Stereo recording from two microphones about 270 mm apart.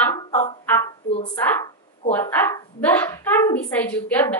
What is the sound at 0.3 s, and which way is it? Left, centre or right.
Fowl, left.